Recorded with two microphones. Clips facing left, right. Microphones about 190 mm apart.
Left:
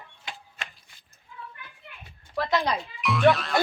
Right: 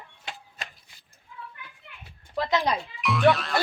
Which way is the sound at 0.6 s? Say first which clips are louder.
Even; 40° right (ahead or behind).